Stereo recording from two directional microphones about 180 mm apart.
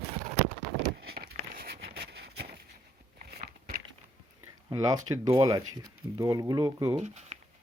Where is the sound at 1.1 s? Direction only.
60° right (ahead or behind).